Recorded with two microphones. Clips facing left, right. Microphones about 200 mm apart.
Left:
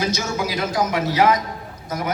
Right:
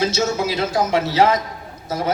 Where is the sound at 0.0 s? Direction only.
25° right (ahead or behind).